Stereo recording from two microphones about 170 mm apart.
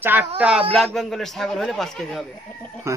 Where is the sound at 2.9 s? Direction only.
15° right (ahead or behind).